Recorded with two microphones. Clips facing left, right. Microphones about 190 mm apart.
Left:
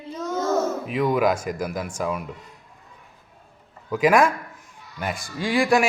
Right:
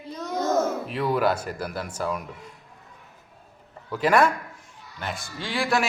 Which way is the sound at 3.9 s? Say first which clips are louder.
Left 2 dB; 10° left (ahead or behind).